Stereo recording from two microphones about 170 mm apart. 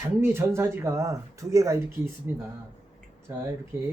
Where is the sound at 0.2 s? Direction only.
15° right (ahead or behind).